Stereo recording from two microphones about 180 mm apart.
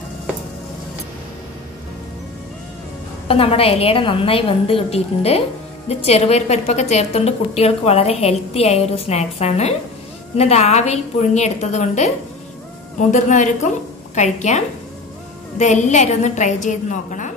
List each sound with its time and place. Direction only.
3.3 s a woman's voice: 30° left (ahead or behind)
13.1 s a woman's voice: 40° left (ahead or behind)